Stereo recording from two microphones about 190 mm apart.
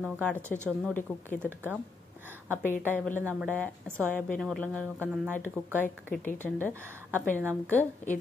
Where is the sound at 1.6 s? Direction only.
10° right (ahead or behind).